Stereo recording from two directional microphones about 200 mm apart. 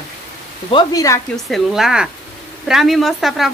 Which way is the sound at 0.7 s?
20° left (ahead or behind).